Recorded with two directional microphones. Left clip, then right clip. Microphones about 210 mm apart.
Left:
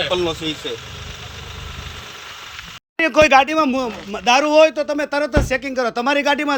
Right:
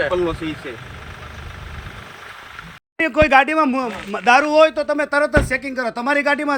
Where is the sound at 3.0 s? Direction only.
10° right (ahead or behind).